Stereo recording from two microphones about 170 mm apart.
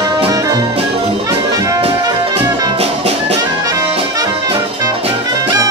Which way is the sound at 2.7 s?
35° right (ahead or behind).